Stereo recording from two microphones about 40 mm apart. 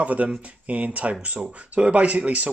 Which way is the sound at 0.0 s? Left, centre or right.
Right.